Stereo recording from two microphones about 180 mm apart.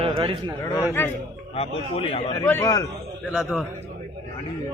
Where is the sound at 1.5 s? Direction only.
35° left (ahead or behind).